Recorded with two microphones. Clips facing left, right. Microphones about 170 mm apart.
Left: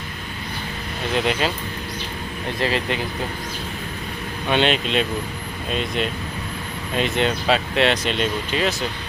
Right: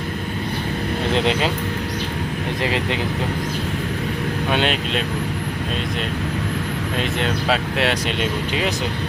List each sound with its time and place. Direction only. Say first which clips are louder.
1.1 s speech: right 1 dB; 25° right (ahead or behind)
2.6 s speech: left 1 dB; 20° right (ahead or behind)
4.5 s speech: left 4 dB; 5° right (ahead or behind)
6.9 s speech: left 3 dB; centre (ahead or behind)